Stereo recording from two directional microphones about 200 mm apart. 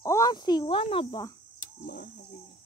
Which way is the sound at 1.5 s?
45° left (ahead or behind).